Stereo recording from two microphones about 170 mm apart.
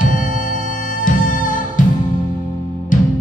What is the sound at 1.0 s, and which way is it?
Music, 50° left (ahead or behind).